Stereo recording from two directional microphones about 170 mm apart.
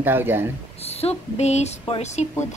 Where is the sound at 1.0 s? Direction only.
40° left (ahead or behind).